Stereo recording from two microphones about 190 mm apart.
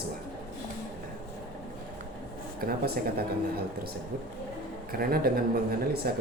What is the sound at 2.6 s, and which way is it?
Speech, 50° right (ahead or behind).